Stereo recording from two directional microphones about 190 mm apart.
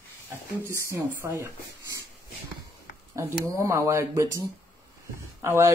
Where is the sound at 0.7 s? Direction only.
15° right (ahead or behind).